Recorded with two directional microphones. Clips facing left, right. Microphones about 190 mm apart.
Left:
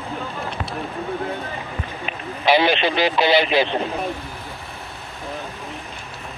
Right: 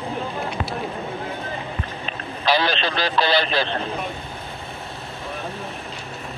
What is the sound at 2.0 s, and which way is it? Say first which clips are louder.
Speech: left 3 dB; 20° left (ahead or behind).